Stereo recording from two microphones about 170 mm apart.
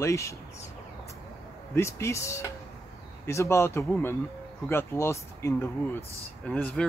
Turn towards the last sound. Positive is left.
turn(degrees=5)  # may be behind; listen again after turning